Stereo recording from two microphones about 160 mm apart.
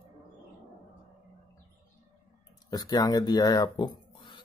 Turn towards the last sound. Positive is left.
turn(degrees=30)  # may be behind; listen again after turning